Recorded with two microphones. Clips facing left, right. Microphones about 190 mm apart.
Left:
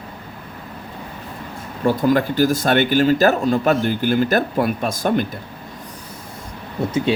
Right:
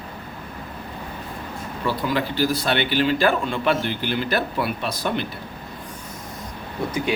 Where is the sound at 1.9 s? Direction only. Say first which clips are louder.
Left 7 dB; 45° left (ahead or behind).